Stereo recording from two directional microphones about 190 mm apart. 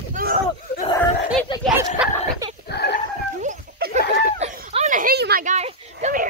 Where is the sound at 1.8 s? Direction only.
10° right (ahead or behind).